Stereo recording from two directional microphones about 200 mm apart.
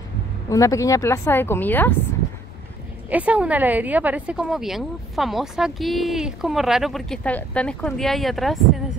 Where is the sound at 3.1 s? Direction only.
5° right (ahead or behind).